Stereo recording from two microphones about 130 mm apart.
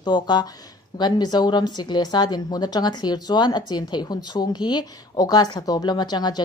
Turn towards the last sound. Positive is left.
turn(degrees=35)  # may be behind; listen again after turning